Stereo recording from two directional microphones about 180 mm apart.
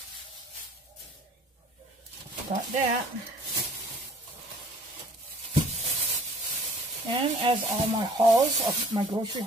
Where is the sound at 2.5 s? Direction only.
50° right (ahead or behind).